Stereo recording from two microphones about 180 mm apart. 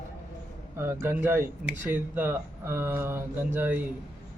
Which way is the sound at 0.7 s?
15° right (ahead or behind).